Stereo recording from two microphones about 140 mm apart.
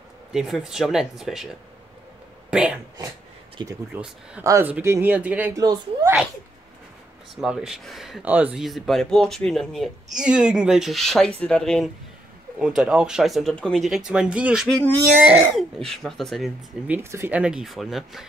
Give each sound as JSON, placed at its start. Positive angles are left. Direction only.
{"t": 0.3, "sound": "speech", "side_deg": -5}
{"t": 2.5, "sound": "speech", "side_deg": -5}
{"t": 3.9, "sound": "speech", "side_deg": -10}
{"t": 4.4, "sound": "speech", "side_deg": -20}
{"t": 5.6, "sound": "speech", "side_deg": -25}
{"t": 7.3, "sound": "speech", "side_deg": -5}
{"t": 16.8, "sound": "speech", "side_deg": -15}
{"t": 17.4, "sound": "speech", "side_deg": -5}